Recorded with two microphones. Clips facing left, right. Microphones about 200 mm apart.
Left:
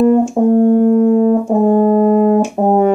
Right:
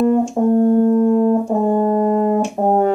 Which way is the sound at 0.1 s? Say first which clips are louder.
Left 4 dB; 10° left (ahead or behind).